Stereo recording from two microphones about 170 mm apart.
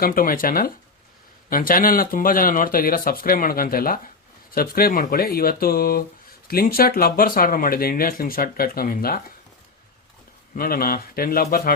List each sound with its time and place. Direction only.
0.0 s speech: 55° left (ahead or behind)
10.5 s speech: 60° left (ahead or behind)